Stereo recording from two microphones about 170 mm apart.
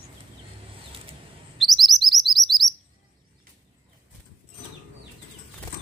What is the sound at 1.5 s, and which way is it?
Chirp, centre (ahead or behind).